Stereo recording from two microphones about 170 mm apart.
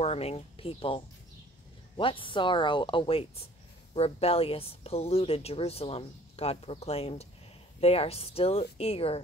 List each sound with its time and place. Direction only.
0.0 s speech: 35° left (ahead or behind)